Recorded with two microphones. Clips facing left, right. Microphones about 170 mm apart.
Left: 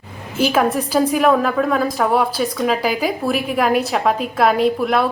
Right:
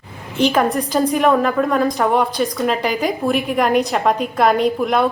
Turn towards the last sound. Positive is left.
turn(degrees=0)  # may be behind; listen again after turning